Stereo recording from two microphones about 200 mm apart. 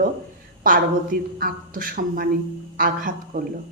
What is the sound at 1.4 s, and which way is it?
A woman's voice, 45° right (ahead or behind).